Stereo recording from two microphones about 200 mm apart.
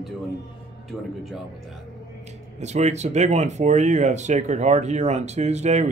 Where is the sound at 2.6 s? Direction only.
35° right (ahead or behind).